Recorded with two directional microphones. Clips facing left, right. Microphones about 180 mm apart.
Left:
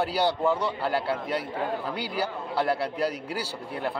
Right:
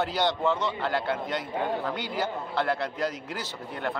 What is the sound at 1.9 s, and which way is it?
Speech, 35° left (ahead or behind).